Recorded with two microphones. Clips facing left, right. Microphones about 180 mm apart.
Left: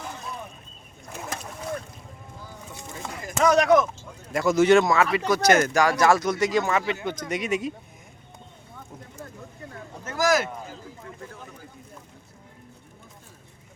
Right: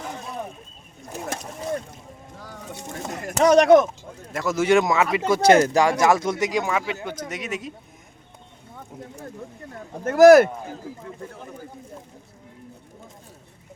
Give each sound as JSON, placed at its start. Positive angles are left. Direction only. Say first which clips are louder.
{"t": 2.4, "sound": "music", "louder": "right 5 dB", "side_deg": -80}
{"t": 3.4, "sound": "speech", "louder": "right 5 dB", "side_deg": -25}
{"t": 4.3, "sound": "speech", "louder": "left 2 dB", "side_deg": 0}
{"t": 10.0, "sound": "speech", "louder": "right 12 dB", "side_deg": -60}